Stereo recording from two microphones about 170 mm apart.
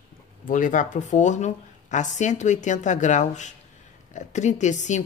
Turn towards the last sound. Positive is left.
turn(degrees=45)  # may be behind; listen again after turning